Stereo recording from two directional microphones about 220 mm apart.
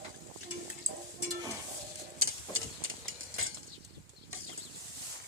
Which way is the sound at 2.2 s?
70° right (ahead or behind).